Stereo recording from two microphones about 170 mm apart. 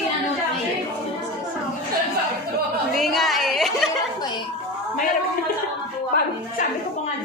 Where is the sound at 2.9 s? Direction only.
Centre (ahead or behind).